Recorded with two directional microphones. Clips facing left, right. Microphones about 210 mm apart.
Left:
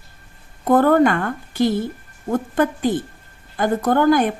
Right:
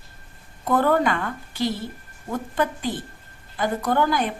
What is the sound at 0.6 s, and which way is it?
A woman's voice, 50° left (ahead or behind).